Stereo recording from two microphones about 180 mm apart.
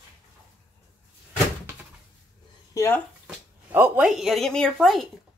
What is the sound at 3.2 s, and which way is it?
A woman's voice, 10° right (ahead or behind).